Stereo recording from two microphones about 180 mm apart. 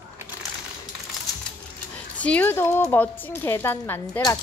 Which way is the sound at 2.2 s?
10° left (ahead or behind).